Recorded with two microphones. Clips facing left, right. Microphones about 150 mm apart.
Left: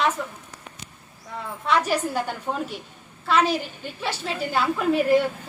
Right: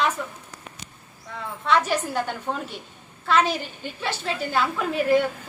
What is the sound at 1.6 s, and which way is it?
A woman's voice, 5° left (ahead or behind).